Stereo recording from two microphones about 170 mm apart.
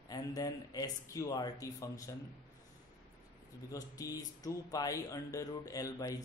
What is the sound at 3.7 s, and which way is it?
Speech, 20° left (ahead or behind).